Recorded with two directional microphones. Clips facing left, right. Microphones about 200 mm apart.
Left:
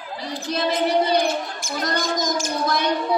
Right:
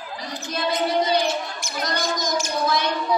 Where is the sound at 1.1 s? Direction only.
50° left (ahead or behind).